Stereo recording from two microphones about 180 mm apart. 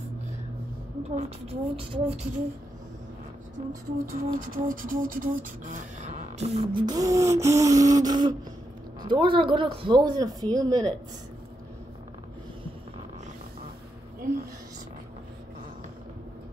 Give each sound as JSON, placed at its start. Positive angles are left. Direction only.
{"t": 1.1, "sound": "speech", "side_deg": -30}
{"t": 4.0, "sound": "beatboxing", "side_deg": -50}
{"t": 6.9, "sound": "a sound", "side_deg": -20}